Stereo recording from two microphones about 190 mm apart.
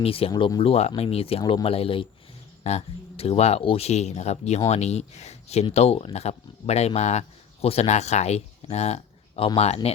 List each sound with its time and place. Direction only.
0.0 s speech: 30° left (ahead or behind)